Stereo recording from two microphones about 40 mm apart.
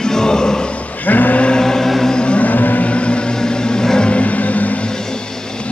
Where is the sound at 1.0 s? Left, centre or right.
Left.